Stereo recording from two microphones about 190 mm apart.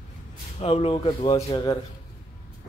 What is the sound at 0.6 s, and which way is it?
Speech, 30° left (ahead or behind).